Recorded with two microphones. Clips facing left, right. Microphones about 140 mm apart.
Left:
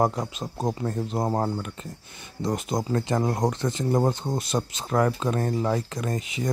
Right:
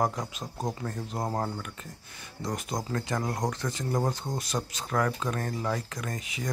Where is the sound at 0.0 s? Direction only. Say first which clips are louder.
Left 5 dB; 30° left (ahead or behind).